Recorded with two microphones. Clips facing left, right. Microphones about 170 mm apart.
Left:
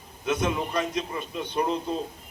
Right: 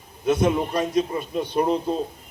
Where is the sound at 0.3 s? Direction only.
30° right (ahead or behind).